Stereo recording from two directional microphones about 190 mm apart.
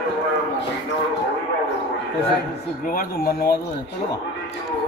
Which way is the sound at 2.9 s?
50° left (ahead or behind).